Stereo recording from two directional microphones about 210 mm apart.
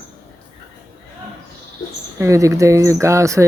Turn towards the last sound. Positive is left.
turn(degrees=-15)  # may be behind; listen again after turning